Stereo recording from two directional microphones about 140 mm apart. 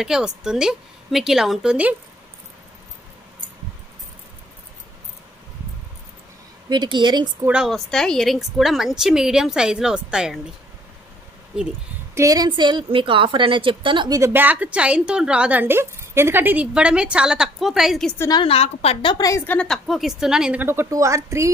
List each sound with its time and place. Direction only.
0.0 s a woman's voice: 5° right (ahead or behind)
6.7 s a woman's voice: 35° right (ahead or behind)
7.4 s a woman's voice: 5° right (ahead or behind)
11.5 s a woman's voice: 5° right (ahead or behind)
12.2 s a woman's voice: 25° right (ahead or behind)
14.3 s a woman's voice: 10° right (ahead or behind)
18.3 s a woman's voice: 40° left (ahead or behind)
19.4 s a woman's voice: 10° left (ahead or behind)
20.6 s a woman's voice: 20° right (ahead or behind)